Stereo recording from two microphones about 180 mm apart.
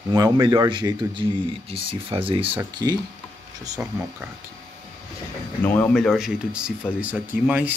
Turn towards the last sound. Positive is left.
turn(degrees=-10)  # may be behind; listen again after turning